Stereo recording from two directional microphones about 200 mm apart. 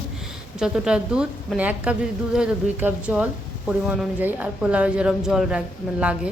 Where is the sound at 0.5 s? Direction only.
5° right (ahead or behind).